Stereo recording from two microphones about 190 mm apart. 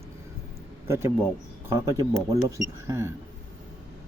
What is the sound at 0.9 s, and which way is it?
Speech, 15° right (ahead or behind).